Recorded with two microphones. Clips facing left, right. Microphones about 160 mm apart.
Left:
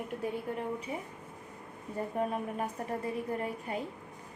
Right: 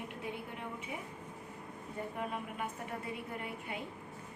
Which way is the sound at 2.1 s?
35° left (ahead or behind).